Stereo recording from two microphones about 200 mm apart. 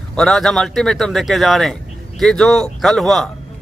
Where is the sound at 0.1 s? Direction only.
5° left (ahead or behind).